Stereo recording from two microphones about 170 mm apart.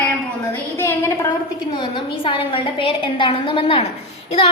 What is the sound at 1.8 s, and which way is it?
A woman's voice, 30° left (ahead or behind).